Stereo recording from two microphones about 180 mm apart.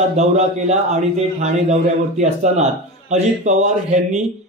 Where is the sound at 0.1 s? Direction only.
40° right (ahead or behind).